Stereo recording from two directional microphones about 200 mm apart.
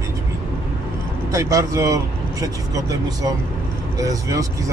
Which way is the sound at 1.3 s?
15° right (ahead or behind).